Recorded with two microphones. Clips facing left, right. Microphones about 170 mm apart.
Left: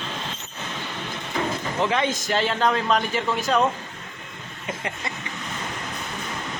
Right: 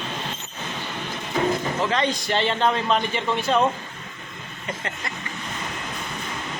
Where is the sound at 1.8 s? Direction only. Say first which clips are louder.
Even; 10° left (ahead or behind).